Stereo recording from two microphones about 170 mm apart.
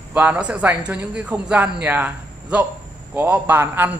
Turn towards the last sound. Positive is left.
turn(degrees=-10)  # may be behind; listen again after turning